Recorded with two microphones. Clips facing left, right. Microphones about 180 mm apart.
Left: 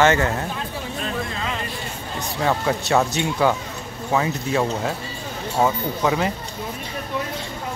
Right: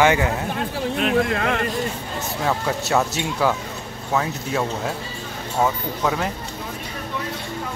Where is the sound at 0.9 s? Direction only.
70° right (ahead or behind).